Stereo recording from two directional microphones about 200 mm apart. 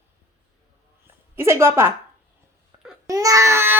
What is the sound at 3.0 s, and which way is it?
Speech, 15° right (ahead or behind).